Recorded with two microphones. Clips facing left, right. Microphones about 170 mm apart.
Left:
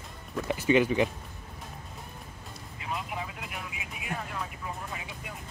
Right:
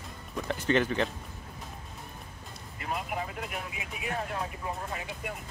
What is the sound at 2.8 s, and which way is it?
Vehicle, 50° right (ahead or behind).